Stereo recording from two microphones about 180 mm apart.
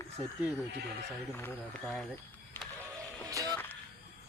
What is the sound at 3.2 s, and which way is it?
Music, 20° right (ahead or behind).